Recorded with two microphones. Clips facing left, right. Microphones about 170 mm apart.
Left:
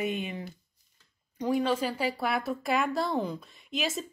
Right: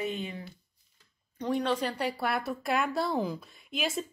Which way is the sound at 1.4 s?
Centre (ahead or behind).